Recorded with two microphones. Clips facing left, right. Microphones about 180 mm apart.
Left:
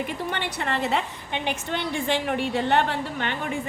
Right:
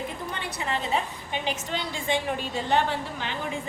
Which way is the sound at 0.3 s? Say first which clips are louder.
Left 3 dB; 70° left (ahead or behind).